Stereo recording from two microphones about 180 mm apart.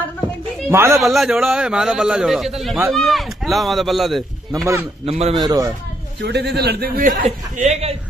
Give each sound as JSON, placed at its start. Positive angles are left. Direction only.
{"t": 0.7, "sound": "a man's voice", "side_deg": -15}
{"t": 0.9, "sound": "a man's voice", "side_deg": 0}
{"t": 5.0, "sound": "speech", "side_deg": -35}
{"t": 5.4, "sound": "speech", "side_deg": -20}
{"t": 6.2, "sound": "a man's voice", "side_deg": -65}